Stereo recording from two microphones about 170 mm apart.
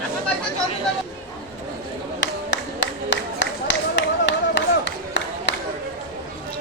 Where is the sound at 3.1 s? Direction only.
90° left.